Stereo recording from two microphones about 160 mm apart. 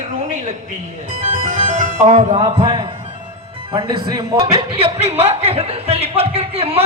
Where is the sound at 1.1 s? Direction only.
35° right (ahead or behind).